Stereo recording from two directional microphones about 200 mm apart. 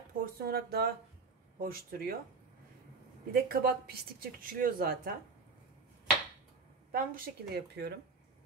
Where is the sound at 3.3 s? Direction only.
50° right (ahead or behind).